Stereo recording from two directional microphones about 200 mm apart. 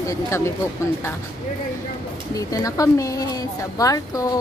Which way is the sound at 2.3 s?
15° left (ahead or behind).